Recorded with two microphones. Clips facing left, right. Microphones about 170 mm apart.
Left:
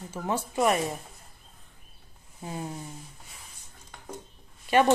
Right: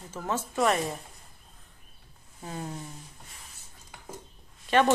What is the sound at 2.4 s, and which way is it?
Speech, 15° left (ahead or behind).